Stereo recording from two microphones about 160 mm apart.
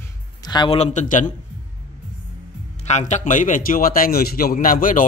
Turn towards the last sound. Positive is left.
turn(degrees=60)  # may be behind; listen again after turning